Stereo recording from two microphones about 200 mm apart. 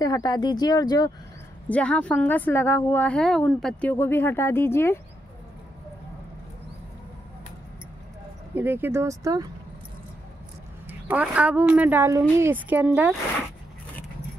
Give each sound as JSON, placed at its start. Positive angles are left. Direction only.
{"t": 0.0, "sound": "speech", "side_deg": 20}
{"t": 1.7, "sound": "speech", "side_deg": 5}
{"t": 8.5, "sound": "a woman's voice", "side_deg": -10}
{"t": 10.9, "sound": "a woman's voice", "side_deg": -10}